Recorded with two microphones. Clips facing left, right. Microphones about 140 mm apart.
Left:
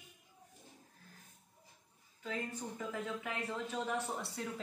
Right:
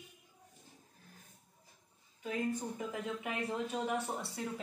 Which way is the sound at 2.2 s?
15° right (ahead or behind).